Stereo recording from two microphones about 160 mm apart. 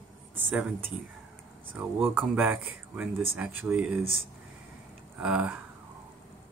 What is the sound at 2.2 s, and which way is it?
Speech, 10° right (ahead or behind).